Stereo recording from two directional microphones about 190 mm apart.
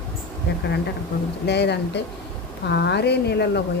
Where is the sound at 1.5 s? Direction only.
60° left (ahead or behind).